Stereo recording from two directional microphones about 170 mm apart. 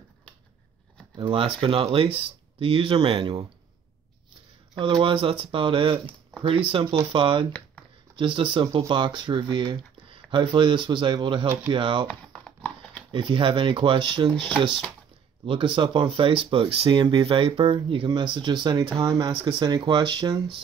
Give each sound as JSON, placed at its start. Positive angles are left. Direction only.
{"t": 1.1, "sound": "speech", "side_deg": -30}
{"t": 4.7, "sound": "speech", "side_deg": -30}
{"t": 12.1, "sound": "a sound", "side_deg": 5}
{"t": 13.1, "sound": "speech", "side_deg": -30}